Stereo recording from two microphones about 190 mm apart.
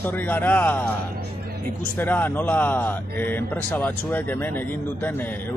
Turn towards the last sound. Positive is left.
turn(degrees=10)  # may be behind; listen again after turning